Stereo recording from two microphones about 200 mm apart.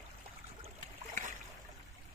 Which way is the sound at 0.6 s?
40° right (ahead or behind).